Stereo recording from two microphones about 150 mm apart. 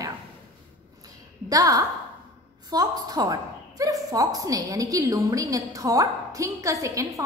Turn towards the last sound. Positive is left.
turn(degrees=-20)  # may be behind; listen again after turning